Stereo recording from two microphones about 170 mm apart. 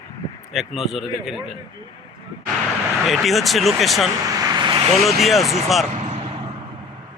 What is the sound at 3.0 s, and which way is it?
Speech, centre (ahead or behind).